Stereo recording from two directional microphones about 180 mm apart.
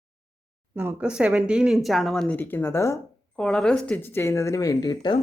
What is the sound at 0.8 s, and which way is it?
Speech, 10° right (ahead or behind).